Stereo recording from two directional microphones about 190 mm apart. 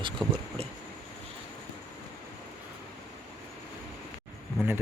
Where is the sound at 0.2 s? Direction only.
25° right (ahead or behind).